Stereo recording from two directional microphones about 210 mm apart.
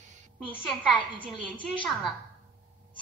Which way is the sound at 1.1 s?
25° right (ahead or behind).